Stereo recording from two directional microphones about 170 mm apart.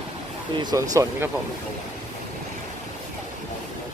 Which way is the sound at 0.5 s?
25° right (ahead or behind).